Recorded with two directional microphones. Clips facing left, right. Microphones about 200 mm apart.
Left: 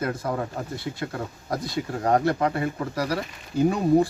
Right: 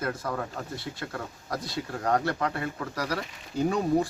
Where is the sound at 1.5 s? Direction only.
15° left (ahead or behind).